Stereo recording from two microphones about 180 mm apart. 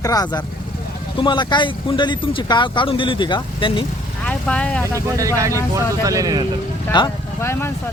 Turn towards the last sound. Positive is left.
turn(degrees=15)  # may be behind; listen again after turning